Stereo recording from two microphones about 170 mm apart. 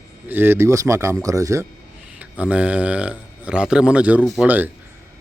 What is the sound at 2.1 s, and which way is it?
Speech, 10° right (ahead or behind).